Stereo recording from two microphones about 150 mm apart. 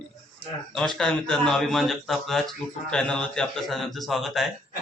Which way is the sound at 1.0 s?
5° left (ahead or behind).